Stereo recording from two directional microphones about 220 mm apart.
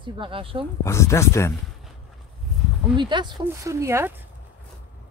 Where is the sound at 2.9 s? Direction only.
20° right (ahead or behind).